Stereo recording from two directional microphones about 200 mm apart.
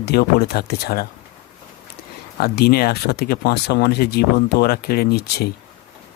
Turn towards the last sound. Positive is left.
turn(degrees=55)  # may be behind; listen again after turning